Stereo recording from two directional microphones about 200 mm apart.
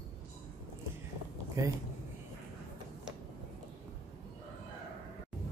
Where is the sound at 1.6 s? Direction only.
15° right (ahead or behind).